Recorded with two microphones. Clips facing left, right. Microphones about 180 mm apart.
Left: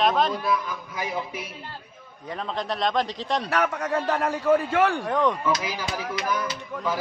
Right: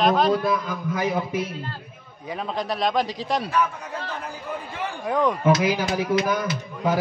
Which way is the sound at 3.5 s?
85° left.